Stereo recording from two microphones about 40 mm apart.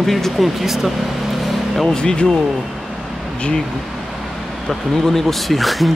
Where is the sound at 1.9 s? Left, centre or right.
Left.